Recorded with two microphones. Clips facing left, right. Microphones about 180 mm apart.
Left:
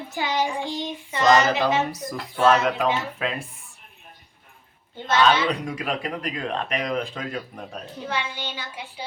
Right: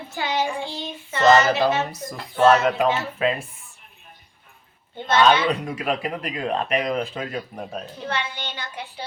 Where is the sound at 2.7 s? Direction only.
Centre (ahead or behind).